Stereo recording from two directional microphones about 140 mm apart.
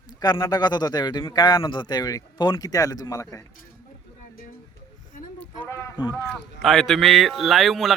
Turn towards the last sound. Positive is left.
turn(degrees=0)  # may be behind; listen again after turning